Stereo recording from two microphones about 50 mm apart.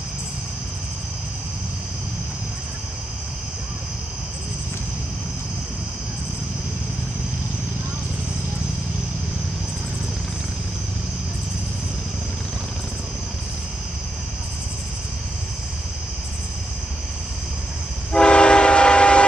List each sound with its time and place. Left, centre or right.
18.1 s train: centre